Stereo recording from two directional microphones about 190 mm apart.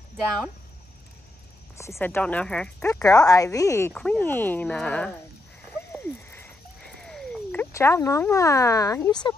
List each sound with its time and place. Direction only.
1.8 s speech: 15° left (ahead or behind)
2.9 s speech: 15° left (ahead or behind)
3.9 s speech: 5° left (ahead or behind)
5.7 s frog: 10° left (ahead or behind)
7.7 s speech: 15° left (ahead or behind)